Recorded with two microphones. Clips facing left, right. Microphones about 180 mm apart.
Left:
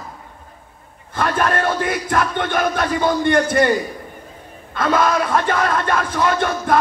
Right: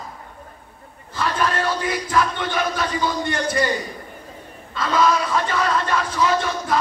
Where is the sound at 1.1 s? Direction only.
55° left (ahead or behind).